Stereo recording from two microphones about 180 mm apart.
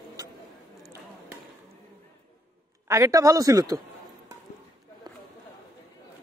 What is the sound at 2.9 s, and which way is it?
Speech, 15° right (ahead or behind).